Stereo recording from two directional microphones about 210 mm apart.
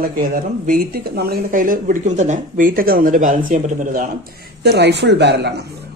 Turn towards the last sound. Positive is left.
turn(degrees=-55)  # may be behind; listen again after turning